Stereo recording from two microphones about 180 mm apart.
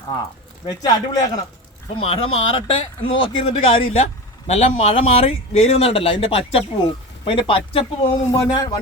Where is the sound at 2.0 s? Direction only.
30° left (ahead or behind).